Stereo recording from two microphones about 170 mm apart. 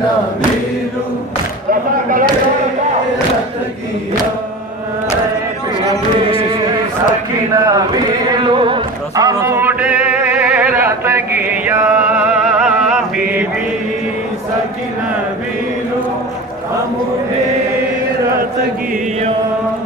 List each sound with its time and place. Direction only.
1.7 s a sound: 55° right (ahead or behind)
7.5 s a man's voice: 20° right (ahead or behind)
8.3 s music: 30° right (ahead or behind); by 13.5 s 5° right (ahead or behind)